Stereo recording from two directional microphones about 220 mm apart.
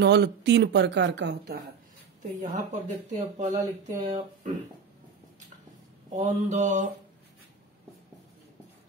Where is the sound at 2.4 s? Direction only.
35° right (ahead or behind).